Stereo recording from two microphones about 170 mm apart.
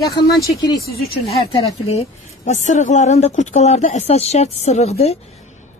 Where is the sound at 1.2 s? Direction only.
35° left (ahead or behind).